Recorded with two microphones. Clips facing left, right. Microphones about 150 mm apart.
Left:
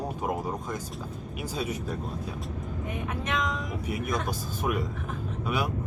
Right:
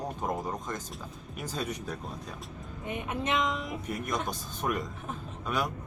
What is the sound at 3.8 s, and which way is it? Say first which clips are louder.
Speech: left 3 dB; 5° left (ahead or behind).